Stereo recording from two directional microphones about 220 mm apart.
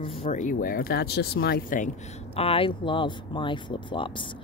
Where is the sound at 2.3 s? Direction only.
25° left (ahead or behind).